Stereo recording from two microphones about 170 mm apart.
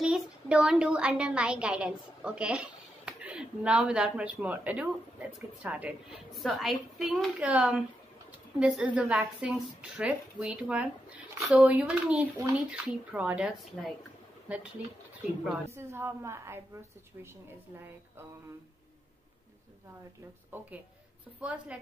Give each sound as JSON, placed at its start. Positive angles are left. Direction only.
{"t": 0.0, "sound": "a woman's voice", "side_deg": -5}
{"t": 15.7, "sound": "a woman's voice", "side_deg": -15}
{"t": 20.5, "sound": "a woman's voice", "side_deg": -10}